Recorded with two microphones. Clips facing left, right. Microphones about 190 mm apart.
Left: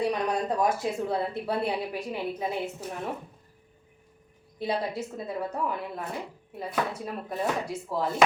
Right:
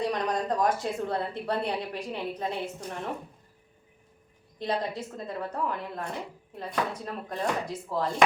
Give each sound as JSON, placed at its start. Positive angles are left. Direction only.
{"t": 0.0, "sound": "a woman's voice", "side_deg": 10}
{"t": 4.6, "sound": "a woman's voice", "side_deg": 5}